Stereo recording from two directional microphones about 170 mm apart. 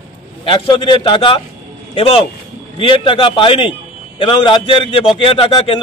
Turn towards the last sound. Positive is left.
turn(degrees=30)  # may be behind; listen again after turning